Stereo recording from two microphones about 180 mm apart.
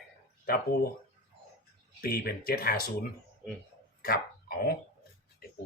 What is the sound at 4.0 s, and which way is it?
Dog, 55° left (ahead or behind).